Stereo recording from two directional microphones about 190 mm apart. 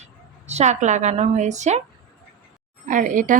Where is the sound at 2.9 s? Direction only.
45° right (ahead or behind).